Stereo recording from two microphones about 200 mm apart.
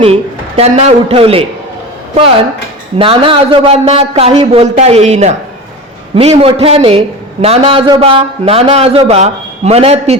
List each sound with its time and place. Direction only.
0.0 s a man's voice: 30° right (ahead or behind)
3.0 s a man's voice: 25° right (ahead or behind)